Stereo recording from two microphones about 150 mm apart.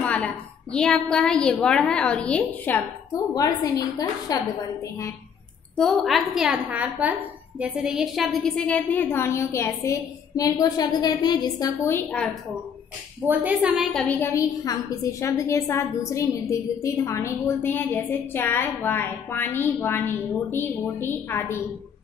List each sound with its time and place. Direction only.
0.0 s a woman's voice: 5° left (ahead or behind)
4.3 s a woman's voice: 25° left (ahead or behind)
5.8 s a woman's voice: centre (ahead or behind); by 11.7 s 30° left (ahead or behind)
11.9 s a woman's voice: 10° left (ahead or behind)
13.2 s a woman's voice: 10° right (ahead or behind)
14.0 s a woman's voice: 20° left (ahead or behind)